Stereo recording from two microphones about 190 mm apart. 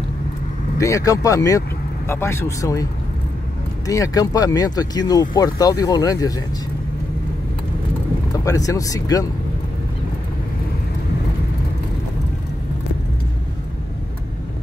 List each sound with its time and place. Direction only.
0.7 s speech: 15° left (ahead or behind)
8.5 s speech: 20° left (ahead or behind)